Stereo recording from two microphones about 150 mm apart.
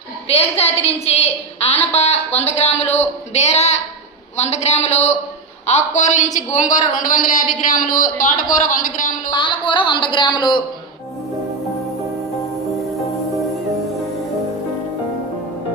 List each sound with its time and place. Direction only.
0.3 s a man's voice: 45° left (ahead or behind); by 9.3 s 60° left (ahead or behind)
9.3 s a man's voice: 30° left (ahead or behind)